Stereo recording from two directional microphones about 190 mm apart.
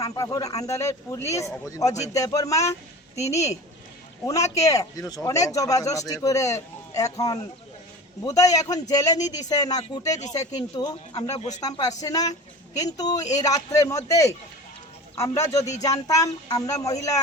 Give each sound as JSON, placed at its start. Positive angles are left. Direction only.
{"t": 0.0, "sound": "a man's voice", "side_deg": 15}